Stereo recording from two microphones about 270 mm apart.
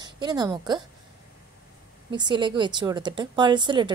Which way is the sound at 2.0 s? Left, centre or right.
Centre.